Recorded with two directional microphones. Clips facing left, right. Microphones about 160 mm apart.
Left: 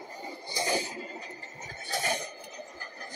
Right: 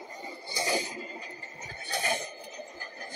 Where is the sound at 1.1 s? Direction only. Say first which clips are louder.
Left 1 dB; 35° left (ahead or behind).